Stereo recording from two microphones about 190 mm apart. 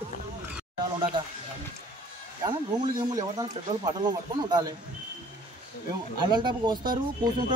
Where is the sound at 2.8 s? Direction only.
20° right (ahead or behind).